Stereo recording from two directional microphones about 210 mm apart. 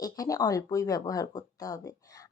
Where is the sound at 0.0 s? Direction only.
15° left (ahead or behind).